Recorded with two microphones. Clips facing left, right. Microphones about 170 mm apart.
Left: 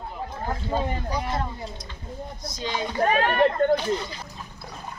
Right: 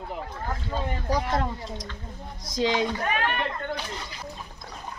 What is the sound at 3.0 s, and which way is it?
Speech, 35° left (ahead or behind).